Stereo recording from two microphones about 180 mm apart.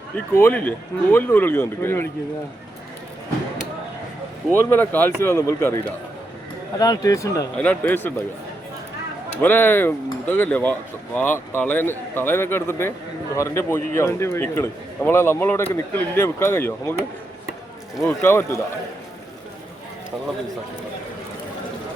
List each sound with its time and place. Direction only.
0.3 s a man's voice: 10° left (ahead or behind)
4.5 s a man's voice: 10° left (ahead or behind)
7.5 s a man's voice: 10° left (ahead or behind)
9.4 s a man's voice: 10° left (ahead or behind)
18.2 s a man's voice: 15° left (ahead or behind)